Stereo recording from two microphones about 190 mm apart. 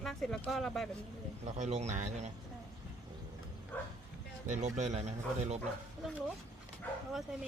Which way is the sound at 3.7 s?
10° left (ahead or behind).